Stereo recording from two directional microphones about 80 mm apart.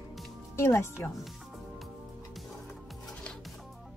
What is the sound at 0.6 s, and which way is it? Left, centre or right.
Speech, left.